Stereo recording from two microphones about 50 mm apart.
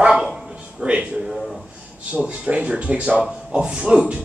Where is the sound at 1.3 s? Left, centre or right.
Centre.